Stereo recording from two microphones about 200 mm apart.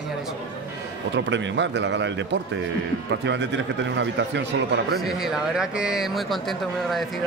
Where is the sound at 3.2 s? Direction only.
65° right (ahead or behind).